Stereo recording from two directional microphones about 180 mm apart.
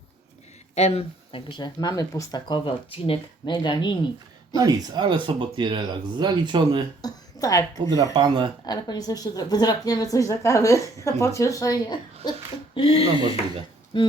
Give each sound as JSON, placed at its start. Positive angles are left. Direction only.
{"t": 0.8, "sound": "a woman's voice", "side_deg": 35}
{"t": 4.5, "sound": "speech", "side_deg": -20}
{"t": 7.0, "sound": "a sound", "side_deg": 20}
{"t": 8.1, "sound": "speech", "side_deg": -25}
{"t": 8.6, "sound": "a woman's voice", "side_deg": 20}